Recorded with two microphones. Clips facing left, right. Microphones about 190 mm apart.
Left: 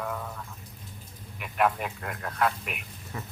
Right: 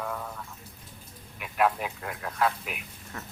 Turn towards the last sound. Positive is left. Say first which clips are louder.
# left 2 dB
turn(degrees=5)  # may be behind; listen again after turning